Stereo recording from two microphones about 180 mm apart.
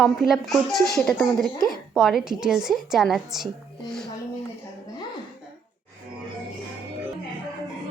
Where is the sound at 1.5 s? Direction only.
20° right (ahead or behind).